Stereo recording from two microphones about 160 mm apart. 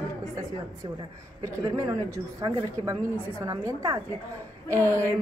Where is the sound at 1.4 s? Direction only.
20° right (ahead or behind).